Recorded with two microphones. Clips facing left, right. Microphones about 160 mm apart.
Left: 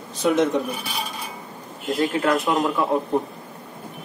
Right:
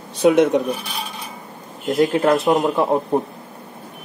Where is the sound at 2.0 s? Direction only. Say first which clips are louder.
Right 5 dB; 30° right (ahead or behind).